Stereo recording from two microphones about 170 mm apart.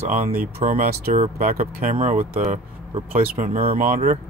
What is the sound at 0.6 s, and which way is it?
Speech, 55° right (ahead or behind).